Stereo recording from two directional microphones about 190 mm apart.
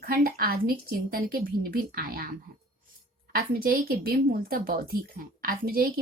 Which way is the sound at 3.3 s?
50° right (ahead or behind).